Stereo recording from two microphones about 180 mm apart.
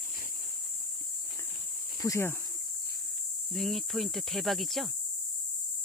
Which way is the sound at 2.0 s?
15° left (ahead or behind).